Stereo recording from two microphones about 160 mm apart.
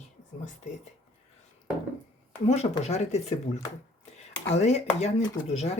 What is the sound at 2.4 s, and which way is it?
Speech, 40° left (ahead or behind).